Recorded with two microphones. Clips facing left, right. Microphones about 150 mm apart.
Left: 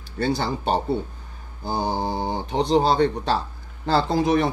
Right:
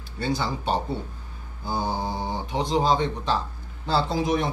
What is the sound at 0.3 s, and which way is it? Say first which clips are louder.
Speech: left 2 dB; 65° left (ahead or behind).